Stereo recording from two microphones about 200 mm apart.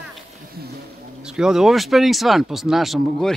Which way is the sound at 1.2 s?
5° right (ahead or behind).